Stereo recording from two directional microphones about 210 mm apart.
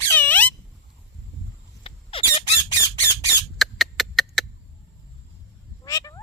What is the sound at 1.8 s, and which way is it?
Squawk, 25° left (ahead or behind).